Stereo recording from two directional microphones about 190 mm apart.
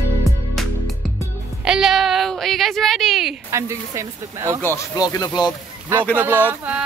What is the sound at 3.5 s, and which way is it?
Speech, 15° right (ahead or behind).